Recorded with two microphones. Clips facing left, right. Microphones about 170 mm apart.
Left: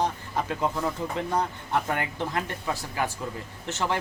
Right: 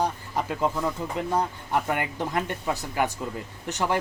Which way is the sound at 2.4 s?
15° right (ahead or behind).